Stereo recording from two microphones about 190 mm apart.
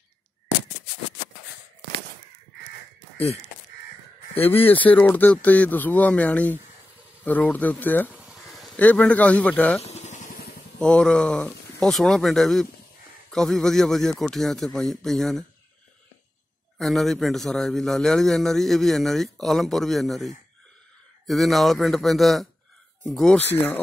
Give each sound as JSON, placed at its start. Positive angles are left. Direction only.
{"t": 4.5, "sound": "speech", "side_deg": 10}
{"t": 8.1, "sound": "speech", "side_deg": 0}
{"t": 9.8, "sound": "vehicle", "side_deg": 35}
{"t": 10.8, "sound": "a man's voice", "side_deg": 5}
{"t": 16.7, "sound": "a man's voice", "side_deg": 0}